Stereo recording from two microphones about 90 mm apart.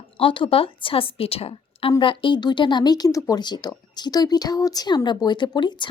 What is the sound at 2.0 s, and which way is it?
Speech, 70° left (ahead or behind).